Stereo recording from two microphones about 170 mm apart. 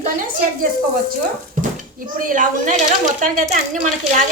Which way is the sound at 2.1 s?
50° right (ahead or behind).